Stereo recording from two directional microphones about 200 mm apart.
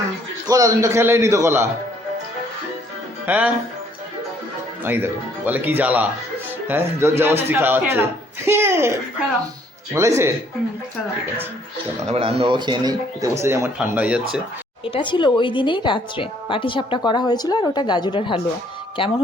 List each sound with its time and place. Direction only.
0.4 s speech: 15° right (ahead or behind)
3.2 s speech: 5° right (ahead or behind)
4.8 s speech: 10° right (ahead or behind)
9.9 s speech: 15° right (ahead or behind)
11.9 s speech: 30° right (ahead or behind); by 14.2 s 5° right (ahead or behind)
14.8 s a woman's voice: 25° left (ahead or behind)